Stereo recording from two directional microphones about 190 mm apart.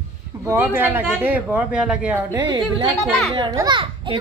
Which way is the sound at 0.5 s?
10° right (ahead or behind).